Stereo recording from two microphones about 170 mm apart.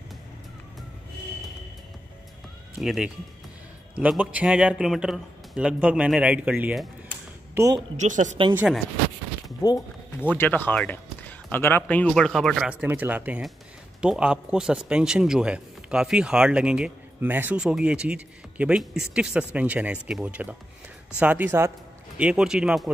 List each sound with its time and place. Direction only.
2.8 s speech: centre (ahead or behind)
7.5 s speech: 20° right (ahead or behind)
8.0 s a woman's voice: 45° right (ahead or behind)
8.5 s speech: 5° right (ahead or behind)
9.6 s a sound: 20° left (ahead or behind)
10.3 s speech: 10° left (ahead or behind); by 22.8 s 5° right (ahead or behind)